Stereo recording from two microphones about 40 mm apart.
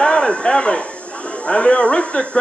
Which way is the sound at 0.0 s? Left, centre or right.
Centre.